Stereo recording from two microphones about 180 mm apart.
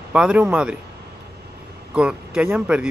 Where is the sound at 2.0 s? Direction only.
5° right (ahead or behind).